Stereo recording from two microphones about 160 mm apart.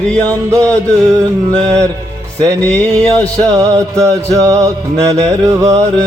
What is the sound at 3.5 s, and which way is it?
Music, 20° right (ahead or behind).